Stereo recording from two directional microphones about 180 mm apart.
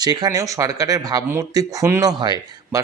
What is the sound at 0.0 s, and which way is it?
Speech, 20° right (ahead or behind).